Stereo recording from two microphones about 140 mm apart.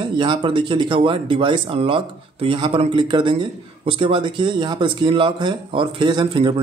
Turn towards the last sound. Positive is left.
turn(degrees=-35)  # may be behind; listen again after turning